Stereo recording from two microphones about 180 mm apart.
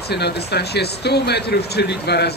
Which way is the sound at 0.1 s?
65° left (ahead or behind).